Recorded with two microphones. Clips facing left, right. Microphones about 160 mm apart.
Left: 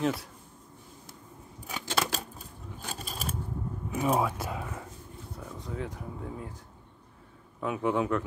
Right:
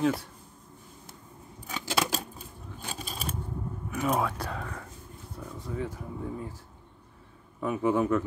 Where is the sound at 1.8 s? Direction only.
5° right (ahead or behind).